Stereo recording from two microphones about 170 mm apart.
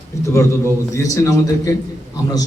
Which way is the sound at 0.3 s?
15° left (ahead or behind).